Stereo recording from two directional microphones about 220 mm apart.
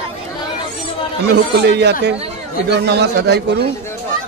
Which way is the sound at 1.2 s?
50° right (ahead or behind).